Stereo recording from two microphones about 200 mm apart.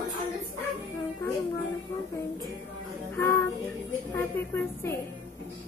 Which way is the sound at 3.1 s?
10° left (ahead or behind).